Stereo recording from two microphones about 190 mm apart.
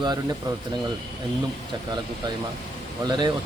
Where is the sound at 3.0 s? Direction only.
20° right (ahead or behind).